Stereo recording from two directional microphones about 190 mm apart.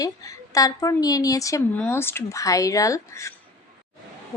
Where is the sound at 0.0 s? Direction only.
20° left (ahead or behind).